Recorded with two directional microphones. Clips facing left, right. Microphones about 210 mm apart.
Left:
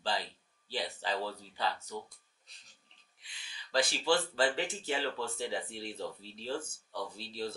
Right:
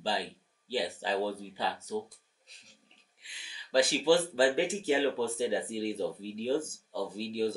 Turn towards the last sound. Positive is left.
turn(degrees=-5)  # may be behind; listen again after turning